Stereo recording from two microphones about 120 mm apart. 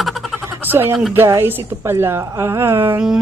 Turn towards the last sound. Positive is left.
turn(degrees=-20)  # may be behind; listen again after turning